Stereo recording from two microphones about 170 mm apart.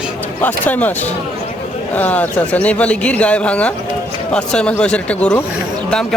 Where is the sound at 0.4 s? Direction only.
10° left (ahead or behind).